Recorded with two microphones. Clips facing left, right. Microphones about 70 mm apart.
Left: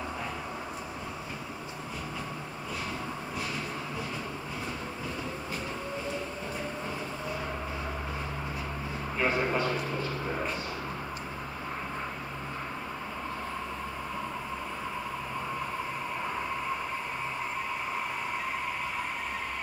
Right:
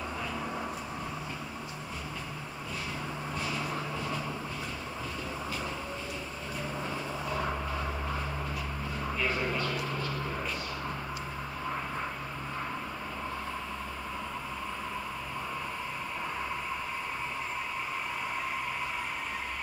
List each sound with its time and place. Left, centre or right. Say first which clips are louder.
9.2 s vehicle: left 5 dB; left